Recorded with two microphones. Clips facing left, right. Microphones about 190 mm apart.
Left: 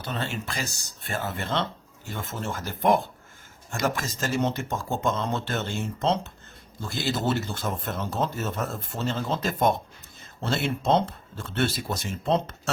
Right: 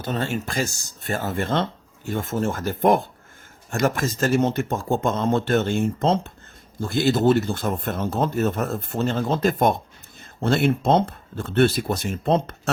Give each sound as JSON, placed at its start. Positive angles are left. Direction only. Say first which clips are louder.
{"t": 0.0, "sound": "speech", "louder": "right 6 dB", "side_deg": -45}